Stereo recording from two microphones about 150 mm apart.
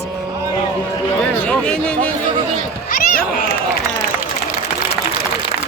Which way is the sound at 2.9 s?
70° left (ahead or behind).